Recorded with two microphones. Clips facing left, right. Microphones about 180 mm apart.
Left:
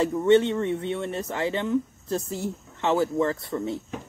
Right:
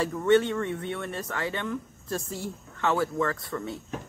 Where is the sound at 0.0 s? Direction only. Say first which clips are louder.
Left 3 dB; 25° left (ahead or behind).